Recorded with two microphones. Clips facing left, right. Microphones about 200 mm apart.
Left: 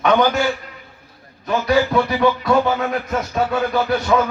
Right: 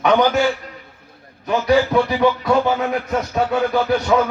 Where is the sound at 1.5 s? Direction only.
15° right (ahead or behind).